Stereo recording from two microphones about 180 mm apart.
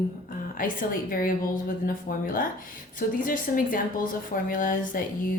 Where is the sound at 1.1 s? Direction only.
50° left (ahead or behind).